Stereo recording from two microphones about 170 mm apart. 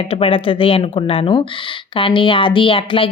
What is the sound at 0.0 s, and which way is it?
Speech, 35° left (ahead or behind).